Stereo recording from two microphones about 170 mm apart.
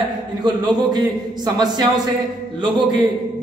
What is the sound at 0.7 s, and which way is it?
A man's voice, 25° right (ahead or behind).